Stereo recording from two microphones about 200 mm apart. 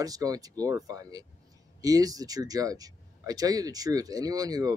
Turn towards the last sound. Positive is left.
turn(degrees=-20)  # may be behind; listen again after turning